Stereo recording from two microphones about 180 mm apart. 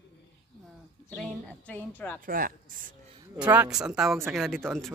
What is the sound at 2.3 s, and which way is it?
Speech, 50° right (ahead or behind).